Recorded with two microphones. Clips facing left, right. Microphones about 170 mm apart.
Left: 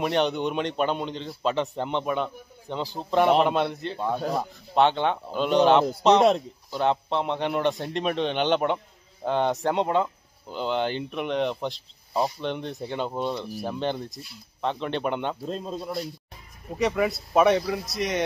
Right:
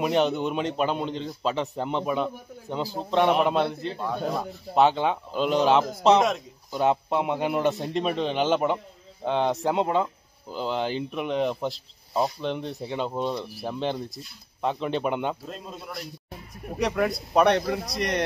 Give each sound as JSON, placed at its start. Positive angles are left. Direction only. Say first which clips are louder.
{"t": 0.0, "sound": "speech", "louder": "right 1 dB", "side_deg": -5}
{"t": 15.4, "sound": "a man's voice", "louder": "left 7 dB", "side_deg": 30}
{"t": 16.7, "sound": "speech", "louder": "left 1 dB", "side_deg": 0}